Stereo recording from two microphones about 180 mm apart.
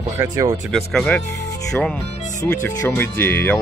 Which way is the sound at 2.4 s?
10° left (ahead or behind).